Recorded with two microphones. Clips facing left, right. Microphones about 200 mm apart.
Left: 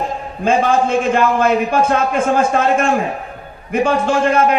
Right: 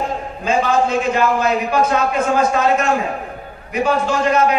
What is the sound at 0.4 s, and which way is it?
A man's voice, 50° left (ahead or behind).